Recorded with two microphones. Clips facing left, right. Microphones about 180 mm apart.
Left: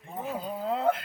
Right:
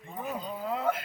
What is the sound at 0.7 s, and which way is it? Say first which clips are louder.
Music: left 3 dB; 25° left (ahead or behind).